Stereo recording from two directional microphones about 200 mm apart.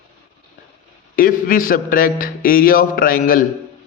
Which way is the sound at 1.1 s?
45° left (ahead or behind).